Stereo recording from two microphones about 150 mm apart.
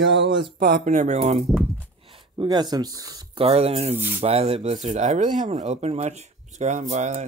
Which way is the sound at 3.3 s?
40° right (ahead or behind).